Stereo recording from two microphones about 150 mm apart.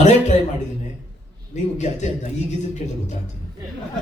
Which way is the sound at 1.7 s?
50° left (ahead or behind).